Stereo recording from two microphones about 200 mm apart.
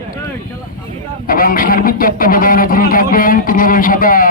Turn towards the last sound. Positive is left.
turn(degrees=45)  # may be behind; listen again after turning